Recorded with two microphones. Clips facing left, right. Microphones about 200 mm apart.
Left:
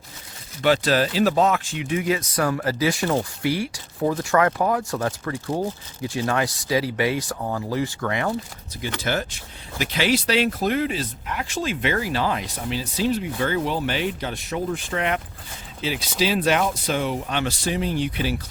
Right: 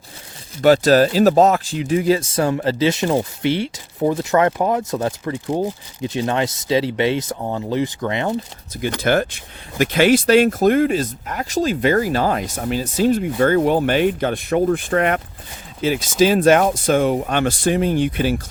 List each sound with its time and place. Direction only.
0.6 s speech: 40° right (ahead or behind); by 8.4 s 20° right (ahead or behind)
8.7 s speech: 50° right (ahead or behind)